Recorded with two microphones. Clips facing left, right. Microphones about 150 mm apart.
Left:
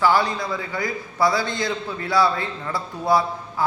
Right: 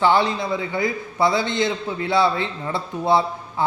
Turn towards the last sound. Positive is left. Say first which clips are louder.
# right 1 dB
turn(degrees=-25)  # may be behind; listen again after turning